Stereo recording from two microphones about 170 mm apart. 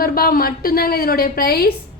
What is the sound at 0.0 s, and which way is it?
A woman's voice, 60° left (ahead or behind).